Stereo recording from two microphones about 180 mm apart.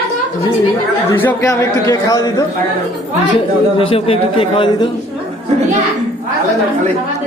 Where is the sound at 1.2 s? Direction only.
15° left (ahead or behind).